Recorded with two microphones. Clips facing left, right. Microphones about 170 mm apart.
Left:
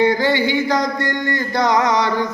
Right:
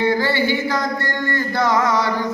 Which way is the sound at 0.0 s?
15° left (ahead or behind).